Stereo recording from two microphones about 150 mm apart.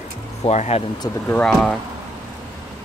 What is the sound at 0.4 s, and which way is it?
Speech, 45° left (ahead or behind).